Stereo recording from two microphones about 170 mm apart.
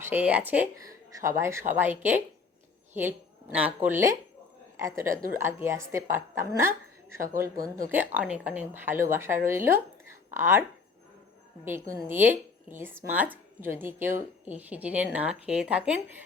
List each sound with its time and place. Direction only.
0.0 s a woman's voice: 10° right (ahead or behind)
12.0 s speech: 10° right (ahead or behind)